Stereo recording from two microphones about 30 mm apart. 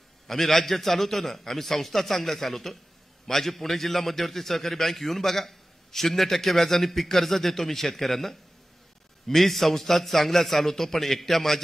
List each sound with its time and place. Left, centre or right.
0.3 s a man's voice: centre